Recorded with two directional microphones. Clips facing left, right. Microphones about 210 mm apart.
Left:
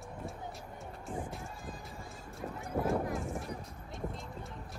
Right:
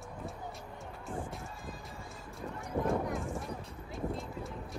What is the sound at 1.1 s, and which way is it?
Run, centre (ahead or behind).